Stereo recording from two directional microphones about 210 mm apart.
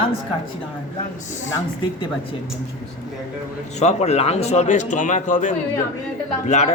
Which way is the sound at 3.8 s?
30° left (ahead or behind).